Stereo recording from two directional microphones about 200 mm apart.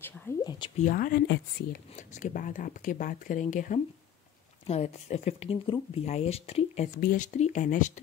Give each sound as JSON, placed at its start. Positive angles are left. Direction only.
{"t": 0.0, "sound": "speech", "side_deg": 10}
{"t": 0.8, "sound": "speech", "side_deg": 45}
{"t": 2.0, "sound": "speech", "side_deg": 40}
{"t": 7.0, "sound": "speech", "side_deg": 40}